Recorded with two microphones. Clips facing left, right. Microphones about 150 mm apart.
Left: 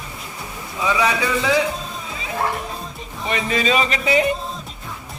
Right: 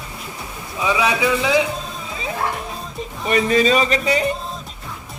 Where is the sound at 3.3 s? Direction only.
40° right (ahead or behind).